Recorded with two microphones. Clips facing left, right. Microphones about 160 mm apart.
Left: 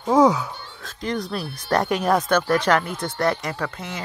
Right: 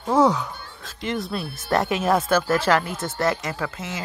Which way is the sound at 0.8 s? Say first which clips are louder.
Left 1 dB; centre (ahead or behind).